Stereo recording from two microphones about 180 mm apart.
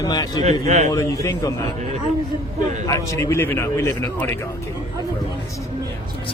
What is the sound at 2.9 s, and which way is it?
Speech, 20° left (ahead or behind).